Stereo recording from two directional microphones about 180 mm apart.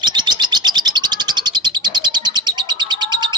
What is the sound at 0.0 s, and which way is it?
Bird, 25° right (ahead or behind).